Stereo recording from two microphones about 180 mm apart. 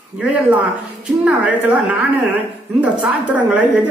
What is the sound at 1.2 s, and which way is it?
A woman's voice, 5° right (ahead or behind).